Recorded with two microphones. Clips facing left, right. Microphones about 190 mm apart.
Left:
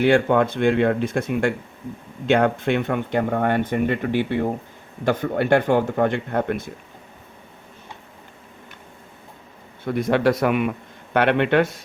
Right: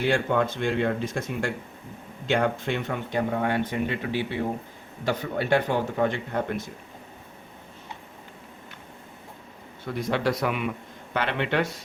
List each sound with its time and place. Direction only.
0.0 s a man's voice: 60° left (ahead or behind)
9.8 s speech: 55° left (ahead or behind)